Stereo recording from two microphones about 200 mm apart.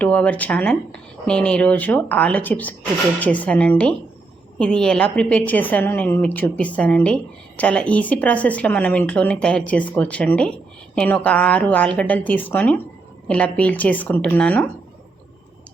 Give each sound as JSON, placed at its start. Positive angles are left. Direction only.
{"t": 0.0, "sound": "a woman's voice", "side_deg": 5}